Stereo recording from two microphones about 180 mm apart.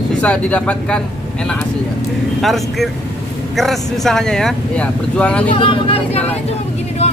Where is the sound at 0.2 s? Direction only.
5° left (ahead or behind).